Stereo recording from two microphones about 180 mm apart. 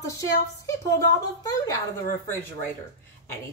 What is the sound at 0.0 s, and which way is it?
Speech, 15° left (ahead or behind).